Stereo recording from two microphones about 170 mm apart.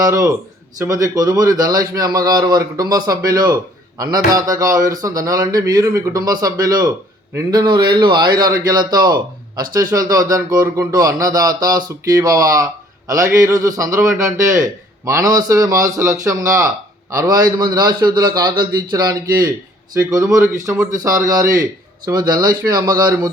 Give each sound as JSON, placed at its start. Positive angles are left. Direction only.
{"t": 0.0, "sound": "a man's voice", "side_deg": -20}